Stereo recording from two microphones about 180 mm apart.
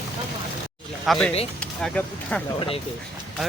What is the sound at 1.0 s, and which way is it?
Speech, centre (ahead or behind).